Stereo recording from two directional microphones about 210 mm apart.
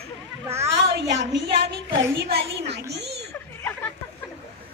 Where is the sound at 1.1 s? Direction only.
55° right (ahead or behind).